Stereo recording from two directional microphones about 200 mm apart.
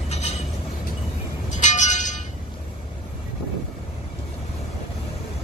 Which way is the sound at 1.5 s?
35° left (ahead or behind).